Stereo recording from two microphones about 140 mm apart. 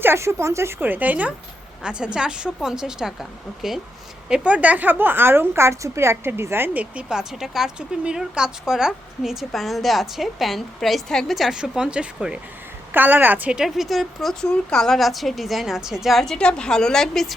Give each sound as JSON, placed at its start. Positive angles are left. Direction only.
{"t": 0.0, "sound": "a woman's voice", "side_deg": -20}